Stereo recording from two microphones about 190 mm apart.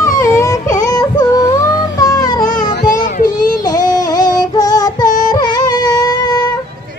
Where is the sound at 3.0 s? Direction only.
45° left (ahead or behind).